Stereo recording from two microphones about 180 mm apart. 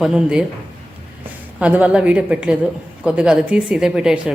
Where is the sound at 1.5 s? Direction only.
5° right (ahead or behind).